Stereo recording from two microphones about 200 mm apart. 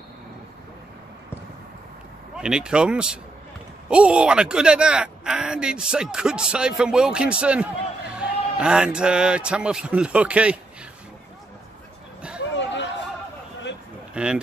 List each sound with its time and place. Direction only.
2.3 s speech: 5° right (ahead or behind)
12.5 s chatter: 65° left (ahead or behind)
14.1 s speech: 5° right (ahead or behind)